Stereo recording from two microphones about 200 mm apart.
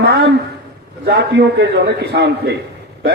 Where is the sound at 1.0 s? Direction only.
55° right (ahead or behind).